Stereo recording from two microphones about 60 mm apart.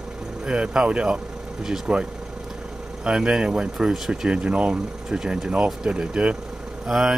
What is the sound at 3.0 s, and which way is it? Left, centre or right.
Speech, centre.